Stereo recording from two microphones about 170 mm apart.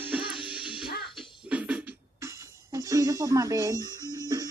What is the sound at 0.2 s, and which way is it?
Music, 30° left (ahead or behind).